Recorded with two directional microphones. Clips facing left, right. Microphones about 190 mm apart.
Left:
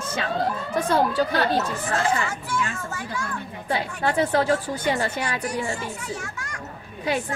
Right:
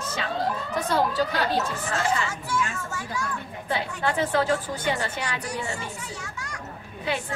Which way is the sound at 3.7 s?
40° left (ahead or behind).